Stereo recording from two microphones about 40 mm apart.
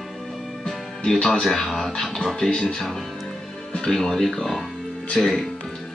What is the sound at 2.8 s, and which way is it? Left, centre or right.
Speech, centre.